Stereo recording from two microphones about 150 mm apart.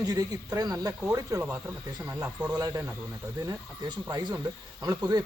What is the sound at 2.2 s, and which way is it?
Speech, 10° right (ahead or behind).